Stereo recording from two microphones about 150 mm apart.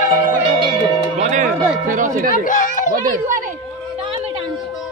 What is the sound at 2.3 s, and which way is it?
Chatter, 60° left (ahead or behind).